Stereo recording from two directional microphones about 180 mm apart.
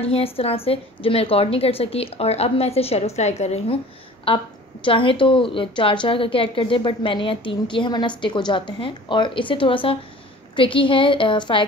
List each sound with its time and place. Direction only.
0.0 s a woman's voice: 35° left (ahead or behind)